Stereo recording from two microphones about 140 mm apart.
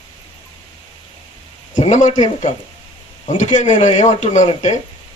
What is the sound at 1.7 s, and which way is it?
Speech, 60° left (ahead or behind).